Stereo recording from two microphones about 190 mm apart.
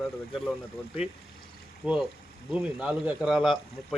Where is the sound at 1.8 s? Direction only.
5° right (ahead or behind).